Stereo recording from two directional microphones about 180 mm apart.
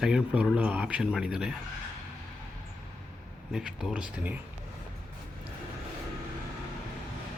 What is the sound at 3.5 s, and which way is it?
Speech, 5° right (ahead or behind).